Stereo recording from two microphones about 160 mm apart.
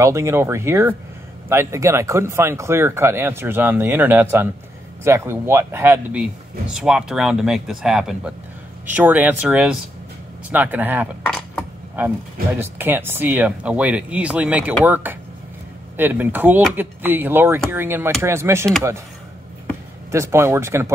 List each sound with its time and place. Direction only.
0.0 s speech: 15° right (ahead or behind)
11.2 s a sound: 5° left (ahead or behind)
12.5 s speech: 15° right (ahead or behind)
20.1 s speech: 15° right (ahead or behind)